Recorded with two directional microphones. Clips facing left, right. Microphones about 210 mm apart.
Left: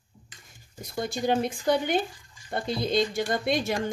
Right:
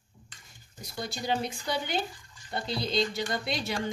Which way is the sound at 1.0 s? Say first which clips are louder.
Left 6 dB; 50° left (ahead or behind).